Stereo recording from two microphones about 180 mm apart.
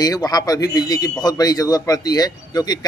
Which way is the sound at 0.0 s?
20° left (ahead or behind).